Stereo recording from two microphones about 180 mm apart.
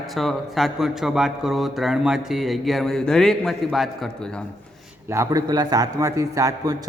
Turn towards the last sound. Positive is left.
turn(degrees=-20)  # may be behind; listen again after turning